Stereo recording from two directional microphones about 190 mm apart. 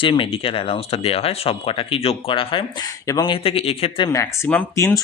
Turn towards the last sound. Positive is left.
turn(degrees=15)  # may be behind; listen again after turning